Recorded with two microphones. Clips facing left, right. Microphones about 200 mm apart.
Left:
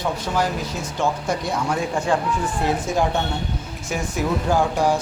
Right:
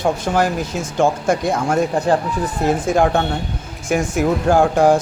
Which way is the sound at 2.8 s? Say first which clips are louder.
Right 6 dB; 55° right (ahead or behind).